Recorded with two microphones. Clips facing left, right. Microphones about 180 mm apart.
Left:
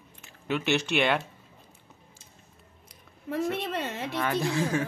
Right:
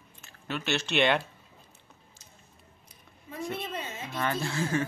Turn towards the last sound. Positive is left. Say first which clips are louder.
# left 3 dB
turn(degrees=10)  # may be behind; listen again after turning